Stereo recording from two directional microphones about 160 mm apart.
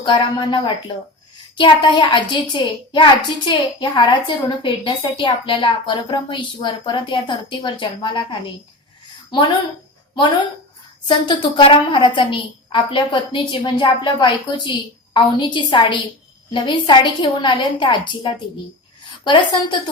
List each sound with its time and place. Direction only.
0.0 s a woman's voice: 30° left (ahead or behind)
11.1 s a woman's voice: 30° left (ahead or behind)